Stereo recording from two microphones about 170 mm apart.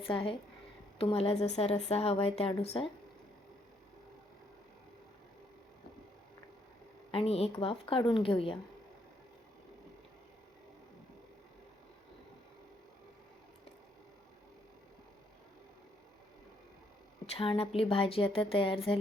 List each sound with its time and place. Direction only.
0.1 s speech: 30° left (ahead or behind)
7.1 s speech: 35° left (ahead or behind)
17.3 s speech: 35° left (ahead or behind)